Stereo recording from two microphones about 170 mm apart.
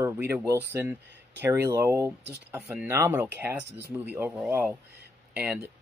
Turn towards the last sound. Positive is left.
turn(degrees=-10)  # may be behind; listen again after turning